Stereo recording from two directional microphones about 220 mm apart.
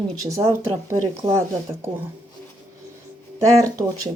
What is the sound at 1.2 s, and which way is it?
Speech, 25° right (ahead or behind).